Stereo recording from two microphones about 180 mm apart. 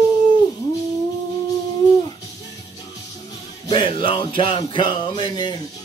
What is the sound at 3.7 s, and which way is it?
Speech, 25° left (ahead or behind).